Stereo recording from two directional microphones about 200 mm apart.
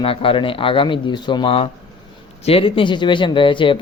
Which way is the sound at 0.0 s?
25° left (ahead or behind).